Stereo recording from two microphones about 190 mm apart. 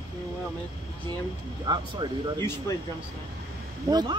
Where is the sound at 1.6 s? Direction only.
25° right (ahead or behind).